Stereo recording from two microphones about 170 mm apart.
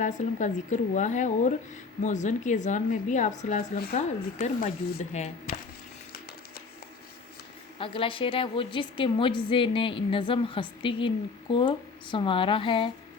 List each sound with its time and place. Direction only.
0.0 s a woman's voice: 45° left (ahead or behind)
7.8 s a woman's voice: 30° left (ahead or behind)